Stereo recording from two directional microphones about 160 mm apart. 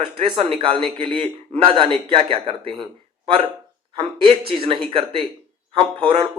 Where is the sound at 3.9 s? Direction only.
35° right (ahead or behind).